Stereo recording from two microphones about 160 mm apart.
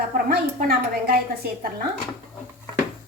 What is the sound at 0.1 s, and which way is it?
A woman's voice, 70° right (ahead or behind).